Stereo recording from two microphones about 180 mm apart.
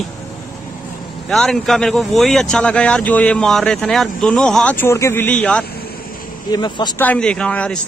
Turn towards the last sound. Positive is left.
turn(degrees=5)  # may be behind; listen again after turning